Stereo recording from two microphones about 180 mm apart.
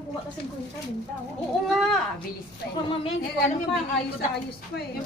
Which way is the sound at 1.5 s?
Centre (ahead or behind).